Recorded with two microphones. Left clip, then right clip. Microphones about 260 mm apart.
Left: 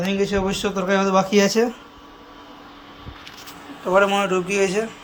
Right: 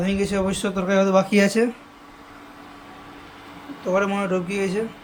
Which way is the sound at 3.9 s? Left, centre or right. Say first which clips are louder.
Left 5 dB; centre.